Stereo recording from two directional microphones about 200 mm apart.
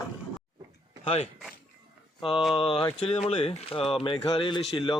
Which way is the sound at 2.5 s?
25° left (ahead or behind).